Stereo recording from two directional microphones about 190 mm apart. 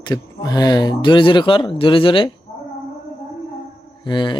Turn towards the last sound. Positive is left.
turn(degrees=25)  # may be behind; listen again after turning